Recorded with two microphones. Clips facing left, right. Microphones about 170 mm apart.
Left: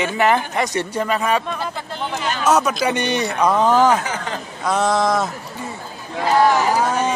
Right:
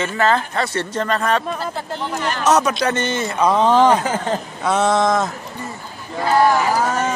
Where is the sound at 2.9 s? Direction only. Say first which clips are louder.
Left 1 dB; 15° left (ahead or behind).